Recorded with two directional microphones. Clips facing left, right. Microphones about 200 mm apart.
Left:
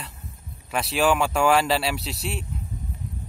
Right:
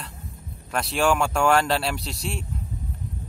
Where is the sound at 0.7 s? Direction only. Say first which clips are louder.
Left 1 dB; 5° left (ahead or behind).